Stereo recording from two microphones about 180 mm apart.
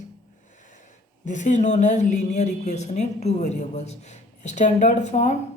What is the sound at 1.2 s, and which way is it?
Speech, 45° left (ahead or behind).